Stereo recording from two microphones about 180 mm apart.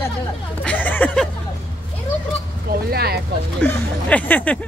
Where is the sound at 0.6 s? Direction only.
10° left (ahead or behind).